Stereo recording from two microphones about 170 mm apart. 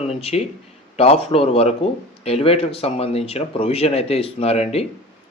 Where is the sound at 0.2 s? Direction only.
35° left (ahead or behind).